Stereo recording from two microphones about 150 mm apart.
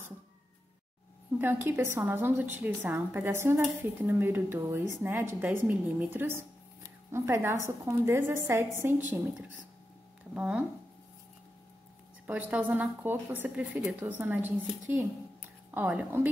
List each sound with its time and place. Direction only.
1.4 s a woman's voice: 15° right (ahead or behind)
10.3 s speech: 5° right (ahead or behind)
12.3 s a woman's voice: 10° right (ahead or behind)